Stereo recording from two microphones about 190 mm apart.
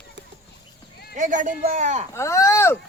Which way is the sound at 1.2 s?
40° right (ahead or behind).